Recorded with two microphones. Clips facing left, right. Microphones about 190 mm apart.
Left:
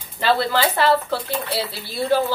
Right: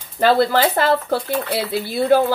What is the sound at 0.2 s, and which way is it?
Speech, 50° right (ahead or behind).